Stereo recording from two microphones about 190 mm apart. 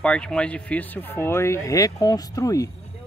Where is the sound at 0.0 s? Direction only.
5° left (ahead or behind).